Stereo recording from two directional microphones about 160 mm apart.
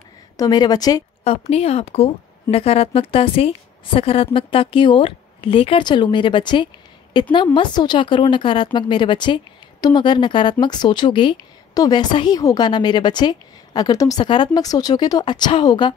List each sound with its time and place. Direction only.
0.4 s a woman's voice: 25° left (ahead or behind)
1.2 s a woman's voice: 40° left (ahead or behind)